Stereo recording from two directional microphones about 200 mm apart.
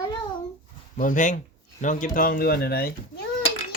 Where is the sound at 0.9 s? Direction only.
40° left (ahead or behind).